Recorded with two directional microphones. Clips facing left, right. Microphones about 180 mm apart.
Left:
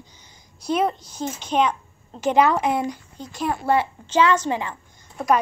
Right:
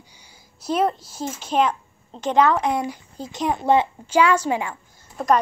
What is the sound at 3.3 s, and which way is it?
A child's voice, 20° right (ahead or behind).